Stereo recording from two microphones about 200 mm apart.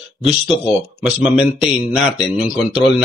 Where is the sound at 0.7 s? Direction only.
5° right (ahead or behind).